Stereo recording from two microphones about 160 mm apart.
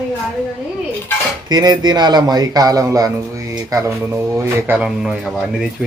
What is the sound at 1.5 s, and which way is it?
Speech, 25° right (ahead or behind).